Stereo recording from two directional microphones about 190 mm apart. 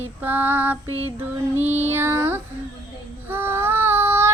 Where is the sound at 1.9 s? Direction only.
10° right (ahead or behind).